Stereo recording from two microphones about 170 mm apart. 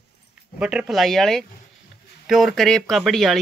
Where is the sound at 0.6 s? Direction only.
5° right (ahead or behind).